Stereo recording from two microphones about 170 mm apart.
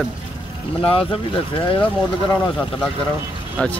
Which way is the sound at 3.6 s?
5° left (ahead or behind).